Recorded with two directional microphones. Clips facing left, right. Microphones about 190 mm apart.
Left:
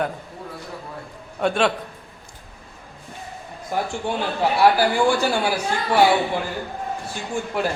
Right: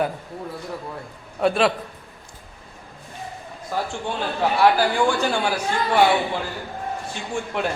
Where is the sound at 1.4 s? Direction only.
Centre (ahead or behind).